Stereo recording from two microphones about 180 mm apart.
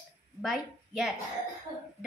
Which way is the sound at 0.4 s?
Centre (ahead or behind).